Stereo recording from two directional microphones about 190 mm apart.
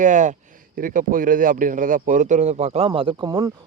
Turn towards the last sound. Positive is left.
turn(degrees=-20)  # may be behind; listen again after turning